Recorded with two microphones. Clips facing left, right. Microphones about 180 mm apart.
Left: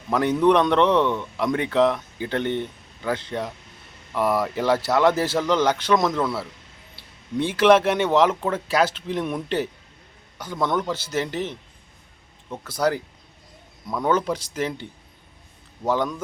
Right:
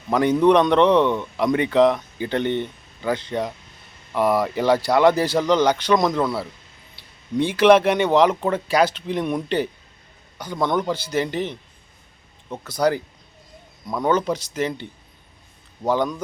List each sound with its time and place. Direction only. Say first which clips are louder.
0.1 s a man's voice: right 2 dB; centre (ahead or behind)
14.0 s speech: right 2 dB; 5° left (ahead or behind)